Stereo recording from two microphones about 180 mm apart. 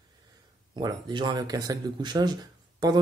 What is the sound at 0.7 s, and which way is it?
Speech, 25° right (ahead or behind).